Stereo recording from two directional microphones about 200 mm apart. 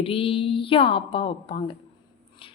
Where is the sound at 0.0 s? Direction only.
25° left (ahead or behind).